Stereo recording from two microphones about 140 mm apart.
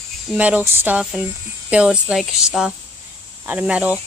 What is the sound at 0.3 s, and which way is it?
Speech, 10° right (ahead or behind).